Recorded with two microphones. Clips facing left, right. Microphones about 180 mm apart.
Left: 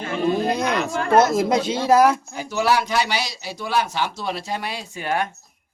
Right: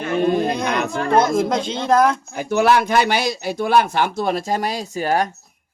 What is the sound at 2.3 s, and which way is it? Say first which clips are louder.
Speech: right 4 dB; 55° right (ahead or behind).